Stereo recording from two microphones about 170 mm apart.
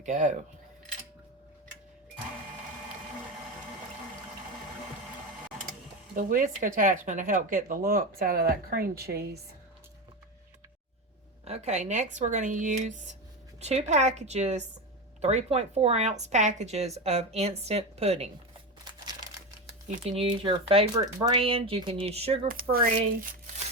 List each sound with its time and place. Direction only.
0.0 s speech: 45° right (ahead or behind)
6.1 s speech: 50° right (ahead or behind); by 9.4 s 70° right (ahead or behind)
11.4 s speech: 40° right (ahead or behind)
20.1 s speech: 30° right (ahead or behind)
21.3 s speech: 35° right (ahead or behind)
22.4 s speech: 55° right (ahead or behind)